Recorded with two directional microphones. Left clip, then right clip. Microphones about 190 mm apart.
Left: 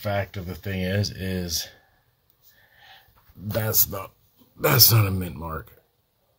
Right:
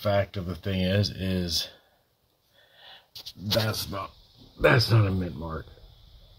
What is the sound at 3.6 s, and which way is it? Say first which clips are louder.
Speech: left 3 dB; 5° left (ahead or behind).